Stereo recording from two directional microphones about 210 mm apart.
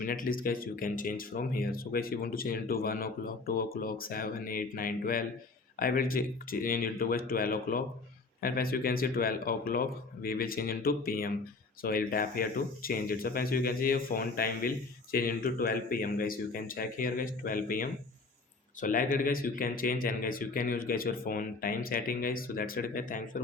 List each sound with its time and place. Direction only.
0.0 s speech: 40° left (ahead or behind)